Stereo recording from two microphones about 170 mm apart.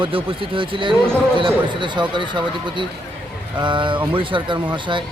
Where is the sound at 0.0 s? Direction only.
30° right (ahead or behind).